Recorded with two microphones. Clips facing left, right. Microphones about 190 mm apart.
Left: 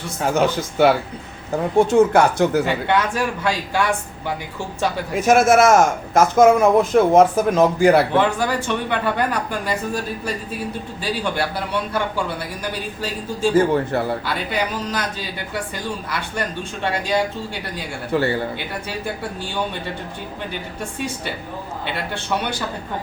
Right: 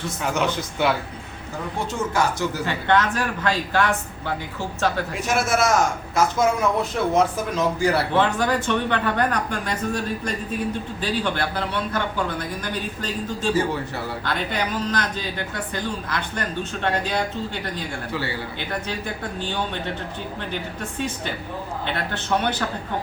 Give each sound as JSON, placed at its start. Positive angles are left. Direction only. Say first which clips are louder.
{"t": 0.2, "sound": "speech", "louder": "left 6 dB", "side_deg": 40}
{"t": 1.8, "sound": "speech", "louder": "left 10 dB", "side_deg": 55}
{"t": 2.6, "sound": "speech", "louder": "left 1 dB", "side_deg": 10}
{"t": 5.1, "sound": "speech", "louder": "left 8 dB", "side_deg": 45}
{"t": 8.1, "sound": "speech", "louder": "left 2 dB", "side_deg": 10}
{"t": 13.5, "sound": "speech", "louder": "left 7 dB", "side_deg": 50}
{"t": 14.3, "sound": "speech", "louder": "left 2 dB", "side_deg": 10}
{"t": 18.1, "sound": "speech", "louder": "left 11 dB", "side_deg": 50}
{"t": 18.9, "sound": "speech", "louder": "left 2 dB", "side_deg": 10}
{"t": 21.8, "sound": "speech", "louder": "left 1 dB", "side_deg": 10}